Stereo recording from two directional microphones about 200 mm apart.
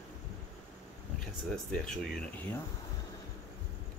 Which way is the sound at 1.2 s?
5° left (ahead or behind).